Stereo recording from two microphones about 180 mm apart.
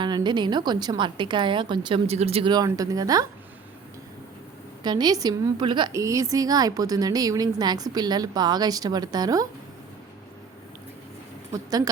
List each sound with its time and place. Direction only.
0.0 s a woman's voice: 25° right (ahead or behind)
4.8 s a woman's voice: 25° right (ahead or behind)